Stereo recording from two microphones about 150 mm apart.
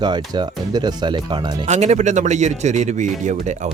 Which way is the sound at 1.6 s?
50° right (ahead or behind).